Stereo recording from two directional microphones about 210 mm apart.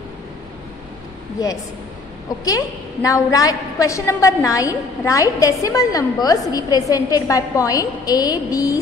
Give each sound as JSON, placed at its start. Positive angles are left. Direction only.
{"t": 2.4, "sound": "a woman's voice", "side_deg": 15}